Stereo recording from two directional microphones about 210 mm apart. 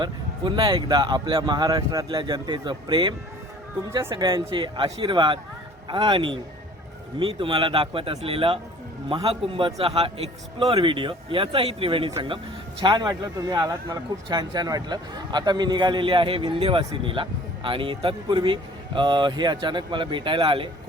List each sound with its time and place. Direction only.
0.0 s speech: 20° right (ahead or behind)